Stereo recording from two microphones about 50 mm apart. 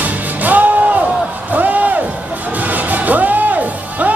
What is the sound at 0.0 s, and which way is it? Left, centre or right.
Music, right.